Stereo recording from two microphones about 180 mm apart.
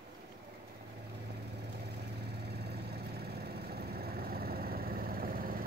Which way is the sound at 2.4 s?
65° right (ahead or behind).